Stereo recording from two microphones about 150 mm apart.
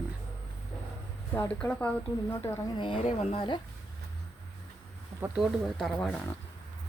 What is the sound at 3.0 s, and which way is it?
Speech, 35° left (ahead or behind).